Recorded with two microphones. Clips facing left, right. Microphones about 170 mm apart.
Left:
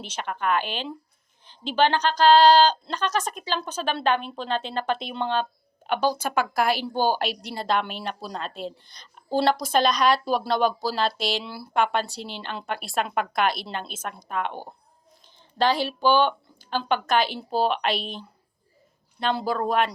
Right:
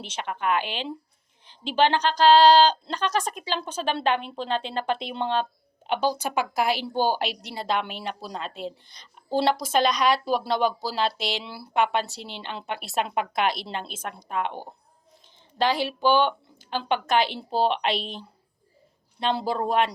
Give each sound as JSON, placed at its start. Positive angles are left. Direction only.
{"t": 0.0, "sound": "speech", "side_deg": -25}
{"t": 15.5, "sound": "speech", "side_deg": -15}